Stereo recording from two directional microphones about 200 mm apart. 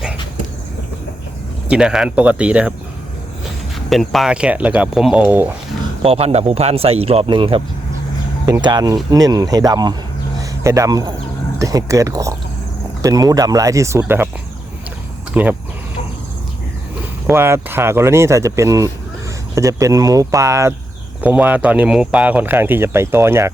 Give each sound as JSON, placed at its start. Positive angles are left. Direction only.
{"t": 1.6, "sound": "speech", "side_deg": -5}
{"t": 3.8, "sound": "speech", "side_deg": 0}
{"t": 6.0, "sound": "speech", "side_deg": -30}
{"t": 15.3, "sound": "speech", "side_deg": -5}
{"t": 17.2, "sound": "speech", "side_deg": -10}